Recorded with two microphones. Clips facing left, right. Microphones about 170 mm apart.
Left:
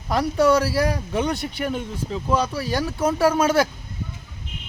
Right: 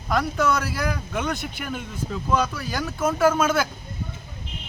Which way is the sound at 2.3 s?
30° left (ahead or behind).